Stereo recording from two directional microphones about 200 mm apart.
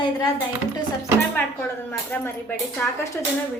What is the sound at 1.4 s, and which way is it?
A woman's voice, 10° left (ahead or behind).